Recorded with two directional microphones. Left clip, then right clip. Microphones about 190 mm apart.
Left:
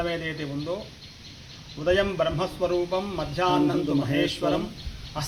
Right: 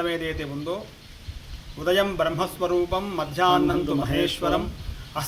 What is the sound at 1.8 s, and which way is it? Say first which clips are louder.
Speech: right 1 dB; 15° right (ahead or behind).